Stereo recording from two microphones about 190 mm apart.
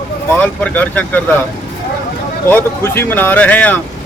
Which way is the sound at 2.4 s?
10° left (ahead or behind).